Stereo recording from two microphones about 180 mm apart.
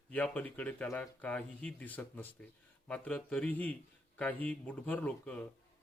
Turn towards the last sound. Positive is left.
turn(degrees=5)  # may be behind; listen again after turning